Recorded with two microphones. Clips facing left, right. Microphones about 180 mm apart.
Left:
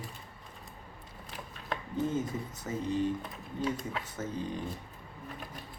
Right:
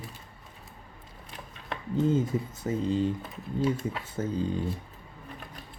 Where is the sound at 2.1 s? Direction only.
25° right (ahead or behind).